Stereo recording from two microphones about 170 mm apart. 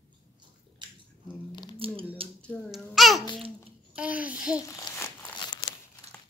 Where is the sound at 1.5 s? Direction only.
25° left (ahead or behind).